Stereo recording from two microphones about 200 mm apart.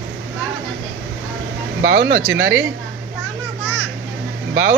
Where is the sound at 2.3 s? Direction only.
70° right (ahead or behind).